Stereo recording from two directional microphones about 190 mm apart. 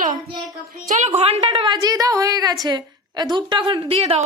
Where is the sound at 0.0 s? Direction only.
45° right (ahead or behind).